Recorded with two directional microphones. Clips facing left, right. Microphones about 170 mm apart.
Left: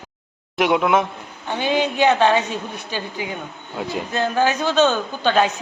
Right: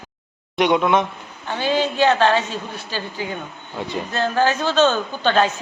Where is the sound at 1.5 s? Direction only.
15° left (ahead or behind).